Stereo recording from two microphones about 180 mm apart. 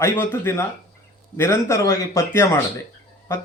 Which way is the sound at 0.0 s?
10° left (ahead or behind).